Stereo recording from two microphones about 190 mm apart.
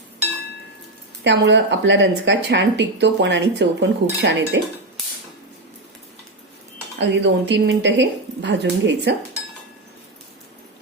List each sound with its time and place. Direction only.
1.2 s speech: 65° right (ahead or behind)
7.0 s speech: 65° right (ahead or behind)